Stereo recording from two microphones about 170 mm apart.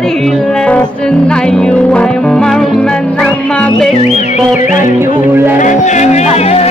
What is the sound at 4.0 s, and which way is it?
Music, 40° left (ahead or behind).